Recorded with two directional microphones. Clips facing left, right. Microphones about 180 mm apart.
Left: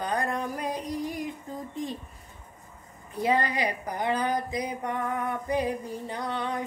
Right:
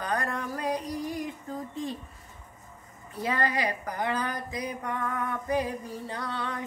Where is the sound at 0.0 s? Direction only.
15° left (ahead or behind).